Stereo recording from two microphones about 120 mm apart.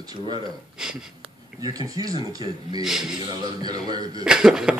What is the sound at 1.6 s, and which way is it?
Speech, 30° right (ahead or behind).